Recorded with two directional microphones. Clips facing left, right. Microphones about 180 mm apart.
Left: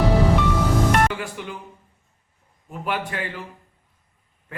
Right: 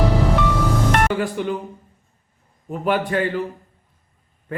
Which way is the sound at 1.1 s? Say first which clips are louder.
Right 9 dB; 40° right (ahead or behind).